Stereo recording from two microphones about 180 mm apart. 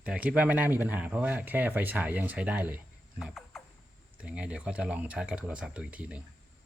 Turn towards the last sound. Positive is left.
turn(degrees=-5)  # may be behind; listen again after turning